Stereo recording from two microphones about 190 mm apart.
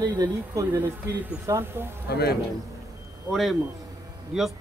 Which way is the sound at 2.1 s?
55° left (ahead or behind).